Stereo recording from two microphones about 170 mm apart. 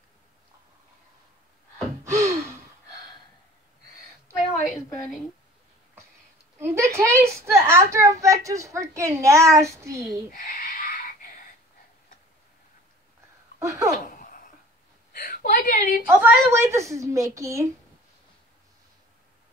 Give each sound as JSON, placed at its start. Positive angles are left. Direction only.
{"t": 2.0, "sound": "gasp", "side_deg": -15}
{"t": 4.8, "sound": "speech", "side_deg": 20}
{"t": 6.6, "sound": "a woman's voice", "side_deg": -15}
{"t": 10.3, "sound": "a sound", "side_deg": 55}
{"t": 13.6, "sound": "speech", "side_deg": -20}
{"t": 13.9, "sound": "a sound", "side_deg": 50}
{"t": 15.1, "sound": "whimper", "side_deg": 60}
{"t": 16.1, "sound": "a child's voice", "side_deg": -10}